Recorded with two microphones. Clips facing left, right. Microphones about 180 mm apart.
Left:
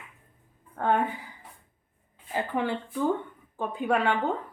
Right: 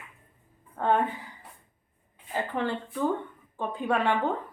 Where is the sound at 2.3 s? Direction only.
10° left (ahead or behind).